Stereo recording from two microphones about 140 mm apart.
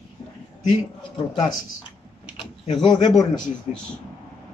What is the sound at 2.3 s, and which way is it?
Speech, 40° left (ahead or behind).